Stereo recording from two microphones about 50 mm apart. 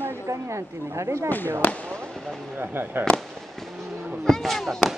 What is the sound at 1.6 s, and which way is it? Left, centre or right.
Speech, left.